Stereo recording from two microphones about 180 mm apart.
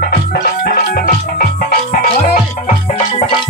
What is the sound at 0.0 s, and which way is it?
Music, 55° left (ahead or behind).